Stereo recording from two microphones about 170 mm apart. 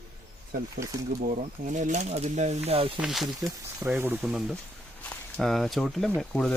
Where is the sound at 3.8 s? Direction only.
10° right (ahead or behind); by 6.5 s 5° left (ahead or behind).